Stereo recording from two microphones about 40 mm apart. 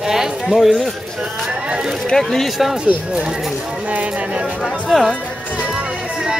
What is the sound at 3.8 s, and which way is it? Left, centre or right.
Speech, right.